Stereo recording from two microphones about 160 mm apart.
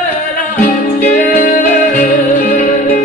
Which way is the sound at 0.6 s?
60° left (ahead or behind).